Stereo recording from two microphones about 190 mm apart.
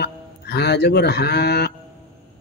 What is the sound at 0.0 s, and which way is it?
Speech, 60° left (ahead or behind).